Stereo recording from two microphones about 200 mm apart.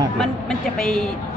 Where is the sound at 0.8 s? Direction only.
5° left (ahead or behind).